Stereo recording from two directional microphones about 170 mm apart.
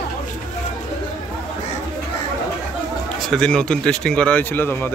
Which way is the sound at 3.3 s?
5° left (ahead or behind).